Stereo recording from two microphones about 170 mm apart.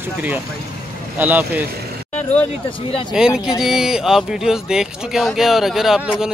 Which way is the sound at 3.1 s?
5° right (ahead or behind).